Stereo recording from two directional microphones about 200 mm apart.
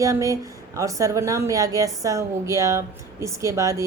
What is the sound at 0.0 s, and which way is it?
A woman's voice, 15° right (ahead or behind).